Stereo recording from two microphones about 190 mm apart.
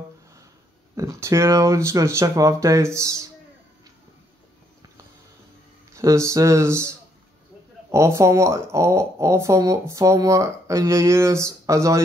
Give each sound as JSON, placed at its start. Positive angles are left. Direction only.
{"t": 0.9, "sound": "speech", "side_deg": -15}
{"t": 5.9, "sound": "speech", "side_deg": -15}
{"t": 7.9, "sound": "speech", "side_deg": -15}